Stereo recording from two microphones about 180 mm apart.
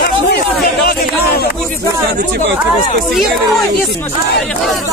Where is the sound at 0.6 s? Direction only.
55° left (ahead or behind).